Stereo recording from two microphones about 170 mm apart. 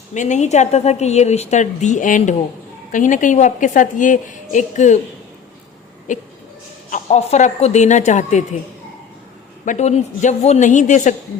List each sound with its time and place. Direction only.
0.1 s a woman's voice: 45° left (ahead or behind)
6.1 s a woman's voice: 50° left (ahead or behind)
9.6 s a woman's voice: 40° left (ahead or behind)